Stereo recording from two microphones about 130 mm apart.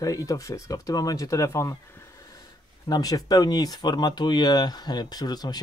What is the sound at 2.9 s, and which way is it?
Speech, 30° left (ahead or behind).